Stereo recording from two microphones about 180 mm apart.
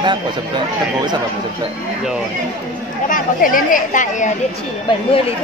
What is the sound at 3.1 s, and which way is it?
Speech, 50° left (ahead or behind).